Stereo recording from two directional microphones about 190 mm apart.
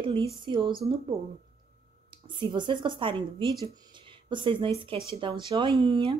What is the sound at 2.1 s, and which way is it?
Speech, 25° right (ahead or behind).